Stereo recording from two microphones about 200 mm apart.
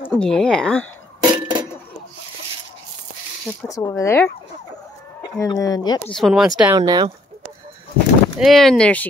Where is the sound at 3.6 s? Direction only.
15° left (ahead or behind).